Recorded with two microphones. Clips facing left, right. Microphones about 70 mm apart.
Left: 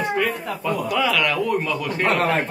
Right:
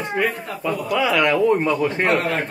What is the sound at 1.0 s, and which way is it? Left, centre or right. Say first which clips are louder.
Speech: right 5 dB; right.